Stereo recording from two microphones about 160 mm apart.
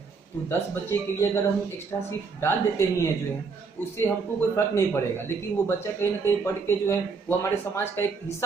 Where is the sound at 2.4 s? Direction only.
15° left (ahead or behind).